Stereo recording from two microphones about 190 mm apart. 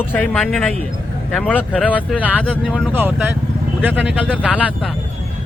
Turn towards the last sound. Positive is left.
turn(degrees=5)  # may be behind; listen again after turning